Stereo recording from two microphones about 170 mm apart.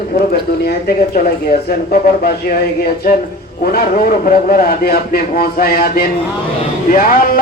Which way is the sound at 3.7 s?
60° left (ahead or behind).